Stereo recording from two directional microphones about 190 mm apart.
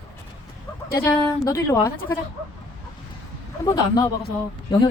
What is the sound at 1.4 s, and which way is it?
Speech, 15° left (ahead or behind).